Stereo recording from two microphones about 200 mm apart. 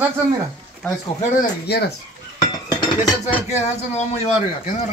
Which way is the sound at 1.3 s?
55° left (ahead or behind).